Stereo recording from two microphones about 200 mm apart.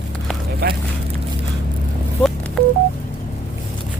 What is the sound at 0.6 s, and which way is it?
Speech, 50° right (ahead or behind).